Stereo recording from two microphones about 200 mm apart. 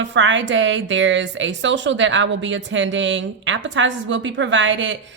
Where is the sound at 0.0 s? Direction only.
65° right (ahead or behind).